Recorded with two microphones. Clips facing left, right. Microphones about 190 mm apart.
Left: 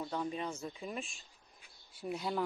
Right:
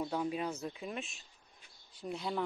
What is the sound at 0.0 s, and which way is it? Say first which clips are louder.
Speech: right 2 dB; 10° right (ahead or behind).